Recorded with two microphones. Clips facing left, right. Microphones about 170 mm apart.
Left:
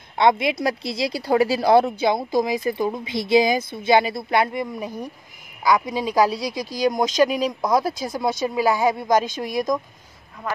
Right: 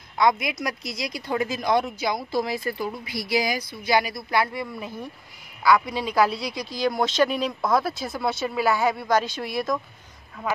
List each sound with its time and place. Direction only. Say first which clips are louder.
0.2 s a woman's voice: left 4 dB; 25° left (ahead or behind)
6.3 s speech: left 4 dB; 40° left (ahead or behind)
6.8 s a woman's voice: left 3 dB; 15° left (ahead or behind)